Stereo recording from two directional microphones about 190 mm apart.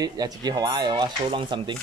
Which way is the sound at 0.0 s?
20° right (ahead or behind).